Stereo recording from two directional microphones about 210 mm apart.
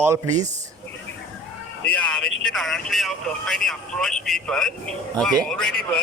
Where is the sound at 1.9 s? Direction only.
5° left (ahead or behind).